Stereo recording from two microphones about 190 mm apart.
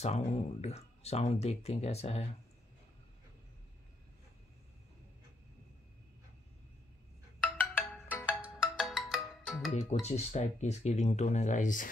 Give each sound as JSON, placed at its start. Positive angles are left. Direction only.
{"t": 0.0, "sound": "speech", "side_deg": 35}
{"t": 7.4, "sound": "ringtone", "side_deg": 10}
{"t": 8.3, "sound": "ringtone", "side_deg": -5}
{"t": 10.0, "sound": "speech", "side_deg": 35}